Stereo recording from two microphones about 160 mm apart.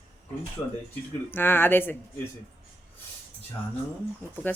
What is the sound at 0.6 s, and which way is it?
Speech, 20° left (ahead or behind).